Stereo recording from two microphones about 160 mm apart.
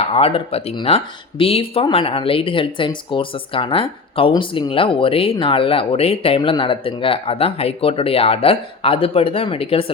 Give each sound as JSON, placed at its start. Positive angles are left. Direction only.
{"t": 0.0, "sound": "speech", "side_deg": 40}